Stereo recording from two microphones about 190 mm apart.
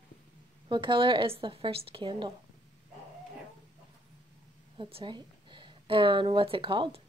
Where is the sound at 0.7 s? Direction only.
25° right (ahead or behind).